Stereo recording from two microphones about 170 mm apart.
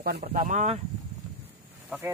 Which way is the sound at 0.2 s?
45° right (ahead or behind).